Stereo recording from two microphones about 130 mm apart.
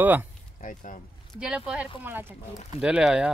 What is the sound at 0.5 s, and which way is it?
Speech, 80° left.